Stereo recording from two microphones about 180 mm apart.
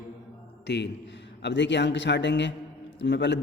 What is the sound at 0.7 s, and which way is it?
A man's voice, 70° left (ahead or behind).